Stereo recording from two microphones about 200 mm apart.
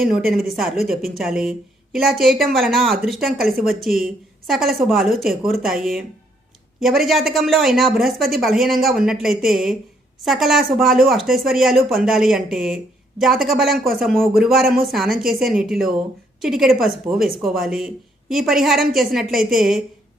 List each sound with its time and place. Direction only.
0.3 s a woman's voice: centre (ahead or behind)